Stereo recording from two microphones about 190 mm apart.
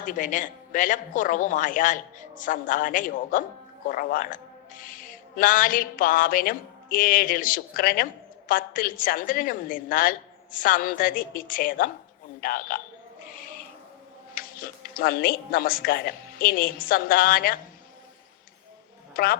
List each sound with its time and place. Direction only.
0.0 s speech: 45° left (ahead or behind)
13.2 s owl: 50° left (ahead or behind)
14.3 s speech: 50° left (ahead or behind)
19.1 s speech: 50° left (ahead or behind)